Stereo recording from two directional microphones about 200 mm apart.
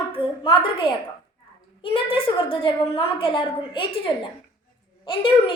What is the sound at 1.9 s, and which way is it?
A woman's voice, 25° left (ahead or behind).